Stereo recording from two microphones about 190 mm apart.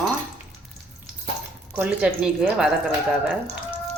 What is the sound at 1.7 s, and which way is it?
Speech, 5° right (ahead or behind).